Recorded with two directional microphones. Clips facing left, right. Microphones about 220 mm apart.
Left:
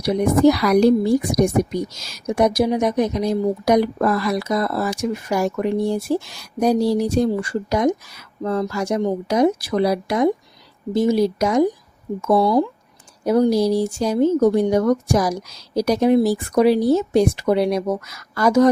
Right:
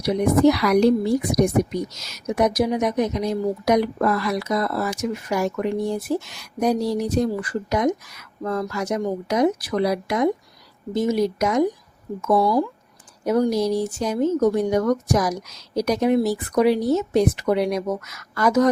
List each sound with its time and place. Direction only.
0.0 s speech: 35° left (ahead or behind)